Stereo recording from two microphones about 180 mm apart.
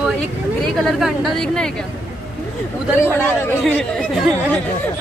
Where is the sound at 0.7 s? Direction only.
Centre (ahead or behind).